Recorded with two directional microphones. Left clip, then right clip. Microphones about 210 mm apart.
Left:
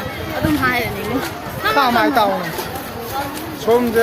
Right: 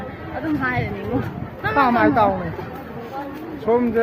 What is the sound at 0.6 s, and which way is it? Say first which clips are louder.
Speech: left 6 dB; 15° left (ahead or behind).